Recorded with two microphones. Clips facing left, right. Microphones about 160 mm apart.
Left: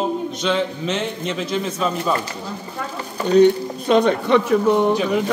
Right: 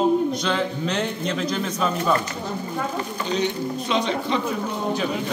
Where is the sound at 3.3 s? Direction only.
50° left (ahead or behind); by 4.9 s 70° left (ahead or behind).